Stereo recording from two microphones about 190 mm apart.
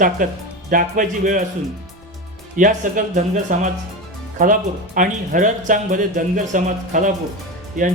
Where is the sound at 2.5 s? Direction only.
40° right (ahead or behind).